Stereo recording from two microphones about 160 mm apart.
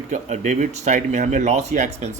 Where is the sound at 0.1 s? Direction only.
45° right (ahead or behind).